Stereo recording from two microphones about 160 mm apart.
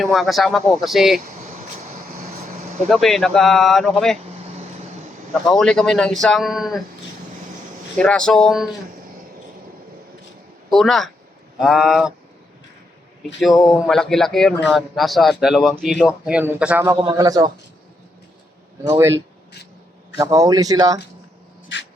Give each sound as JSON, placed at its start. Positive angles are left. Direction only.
{"t": 0.0, "sound": "a man's voice", "side_deg": 0}
{"t": 2.0, "sound": "vehicle", "side_deg": -55}
{"t": 2.9, "sound": "a man's voice", "side_deg": 5}
{"t": 5.3, "sound": "a man's voice", "side_deg": 5}
{"t": 7.9, "sound": "a man's voice", "side_deg": 5}
{"t": 10.7, "sound": "a man's voice", "side_deg": 0}
{"t": 13.6, "sound": "a man's voice", "side_deg": 20}
{"t": 13.8, "sound": "a man's voice", "side_deg": 5}
{"t": 20.1, "sound": "a man's voice", "side_deg": -20}